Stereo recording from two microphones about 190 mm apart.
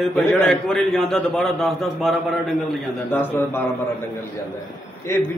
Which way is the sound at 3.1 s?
10° left (ahead or behind).